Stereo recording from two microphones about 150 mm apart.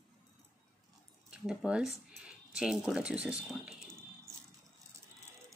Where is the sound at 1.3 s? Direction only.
5° right (ahead or behind).